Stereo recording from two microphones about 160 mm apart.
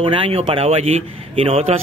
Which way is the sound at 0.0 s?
35° right (ahead or behind).